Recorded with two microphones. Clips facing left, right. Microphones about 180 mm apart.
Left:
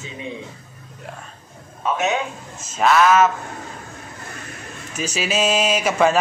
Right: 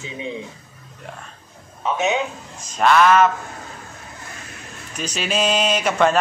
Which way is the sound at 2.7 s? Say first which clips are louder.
Even; centre (ahead or behind).